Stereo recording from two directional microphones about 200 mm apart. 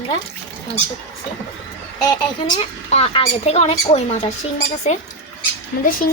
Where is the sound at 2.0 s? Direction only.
20° left (ahead or behind).